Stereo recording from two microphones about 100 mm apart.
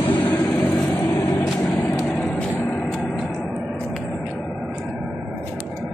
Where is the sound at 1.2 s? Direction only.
45° left (ahead or behind).